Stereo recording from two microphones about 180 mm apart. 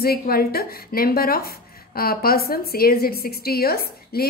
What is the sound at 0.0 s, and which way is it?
A woman's voice, 60° left (ahead or behind).